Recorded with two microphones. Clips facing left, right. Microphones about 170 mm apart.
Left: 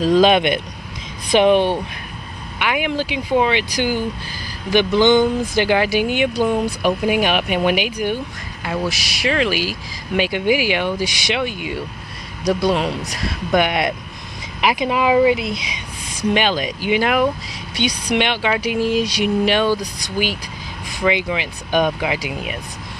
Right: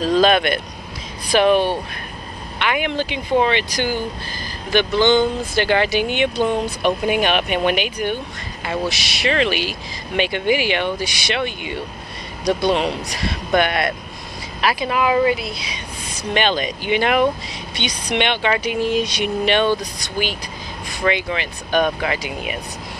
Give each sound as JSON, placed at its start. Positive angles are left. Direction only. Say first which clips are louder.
{"t": 0.0, "sound": "speech", "louder": "left 2 dB", "side_deg": 15}
{"t": 2.6, "sound": "speech", "louder": "even", "side_deg": 5}
{"t": 4.7, "sound": "speech", "louder": "left 2 dB", "side_deg": 15}
{"t": 8.9, "sound": "speech", "louder": "right 1 dB", "side_deg": -70}
{"t": 9.2, "sound": "speech", "louder": "even", "side_deg": 5}
{"t": 13.2, "sound": "speech", "louder": "even", "side_deg": 5}